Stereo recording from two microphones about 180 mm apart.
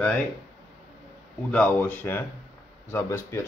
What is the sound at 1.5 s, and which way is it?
Speech, 5° left (ahead or behind).